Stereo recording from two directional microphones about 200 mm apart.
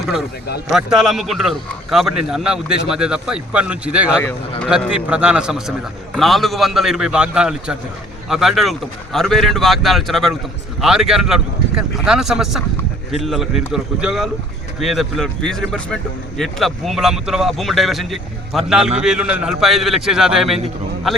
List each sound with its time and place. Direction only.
0.7 s a man's voice: 5° right (ahead or behind)